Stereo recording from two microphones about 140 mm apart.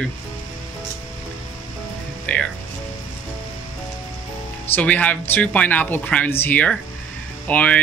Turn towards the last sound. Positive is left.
turn(degrees=10)  # may be behind; listen again after turning